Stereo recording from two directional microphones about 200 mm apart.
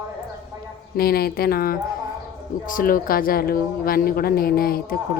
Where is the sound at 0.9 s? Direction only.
50° left (ahead or behind).